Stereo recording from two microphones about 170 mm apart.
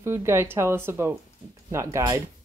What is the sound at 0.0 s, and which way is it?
Speech, 15° right (ahead or behind).